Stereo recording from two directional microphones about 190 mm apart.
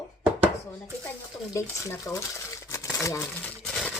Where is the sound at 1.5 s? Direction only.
15° left (ahead or behind).